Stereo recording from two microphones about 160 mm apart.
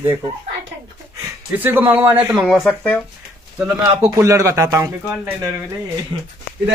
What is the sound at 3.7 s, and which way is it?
A man's voice, 20° right (ahead or behind).